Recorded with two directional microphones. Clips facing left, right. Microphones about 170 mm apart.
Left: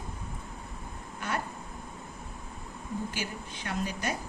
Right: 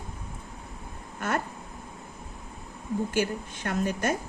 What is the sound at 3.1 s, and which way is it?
Speech, 50° right (ahead or behind).